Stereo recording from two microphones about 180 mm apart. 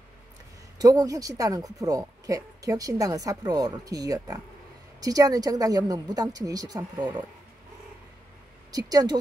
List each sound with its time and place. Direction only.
0.7 s speech: 20° right (ahead or behind)
8.7 s speech: 20° right (ahead or behind)